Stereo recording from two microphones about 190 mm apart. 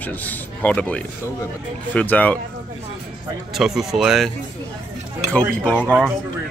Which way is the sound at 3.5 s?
Centre (ahead or behind).